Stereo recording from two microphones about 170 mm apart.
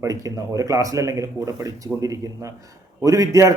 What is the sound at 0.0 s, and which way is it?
Speech, 20° right (ahead or behind).